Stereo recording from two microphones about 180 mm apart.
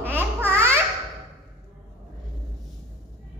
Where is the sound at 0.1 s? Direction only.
10° right (ahead or behind).